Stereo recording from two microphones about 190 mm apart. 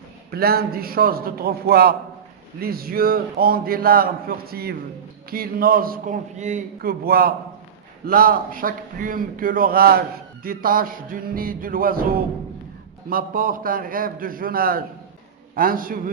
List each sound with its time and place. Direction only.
0.3 s a man's voice: 55° right (ahead or behind)